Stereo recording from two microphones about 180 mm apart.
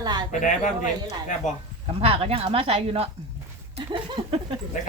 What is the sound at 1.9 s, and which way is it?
Speech, 35° right (ahead or behind).